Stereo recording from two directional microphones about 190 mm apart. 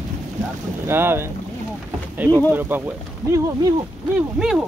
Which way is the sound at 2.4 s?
10° right (ahead or behind).